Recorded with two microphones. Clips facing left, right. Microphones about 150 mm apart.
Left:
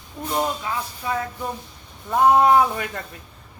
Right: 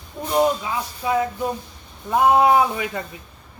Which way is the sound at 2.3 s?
10° right (ahead or behind).